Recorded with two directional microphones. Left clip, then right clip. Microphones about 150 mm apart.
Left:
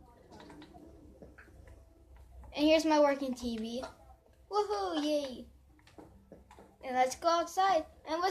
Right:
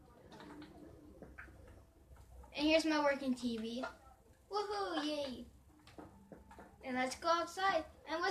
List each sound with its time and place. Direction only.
2.5 s a child's voice: 60° left (ahead or behind)
6.8 s a child's voice: 60° left (ahead or behind)